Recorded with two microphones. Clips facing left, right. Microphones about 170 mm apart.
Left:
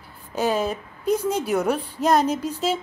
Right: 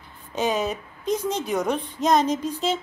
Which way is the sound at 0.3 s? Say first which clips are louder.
Left 1 dB; 5° left (ahead or behind).